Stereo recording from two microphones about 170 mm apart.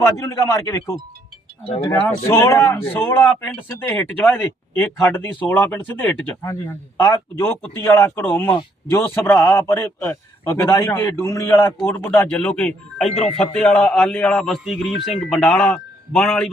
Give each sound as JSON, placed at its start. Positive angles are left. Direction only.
{"t": 0.0, "sound": "speech", "side_deg": 15}